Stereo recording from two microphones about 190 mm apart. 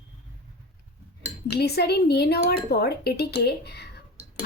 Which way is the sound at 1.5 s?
60° left (ahead or behind).